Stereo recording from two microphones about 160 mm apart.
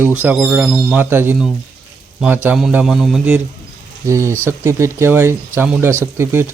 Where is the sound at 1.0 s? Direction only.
15° right (ahead or behind).